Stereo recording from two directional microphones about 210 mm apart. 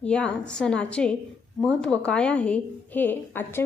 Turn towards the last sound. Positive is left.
turn(degrees=10)  # may be behind; listen again after turning